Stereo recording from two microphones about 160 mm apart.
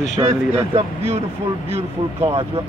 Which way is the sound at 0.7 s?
40° right (ahead or behind).